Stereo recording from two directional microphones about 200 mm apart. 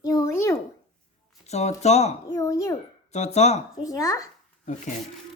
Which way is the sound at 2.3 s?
15° left (ahead or behind).